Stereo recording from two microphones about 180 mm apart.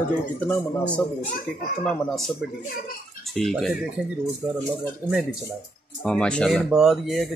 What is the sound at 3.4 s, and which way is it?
Speech, centre (ahead or behind).